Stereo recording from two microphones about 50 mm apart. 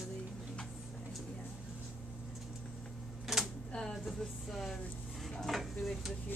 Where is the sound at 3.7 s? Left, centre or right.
Centre.